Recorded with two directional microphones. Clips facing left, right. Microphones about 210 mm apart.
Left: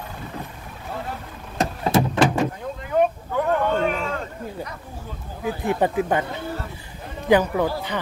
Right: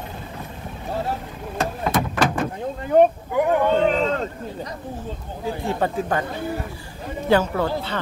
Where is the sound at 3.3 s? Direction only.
15° right (ahead or behind).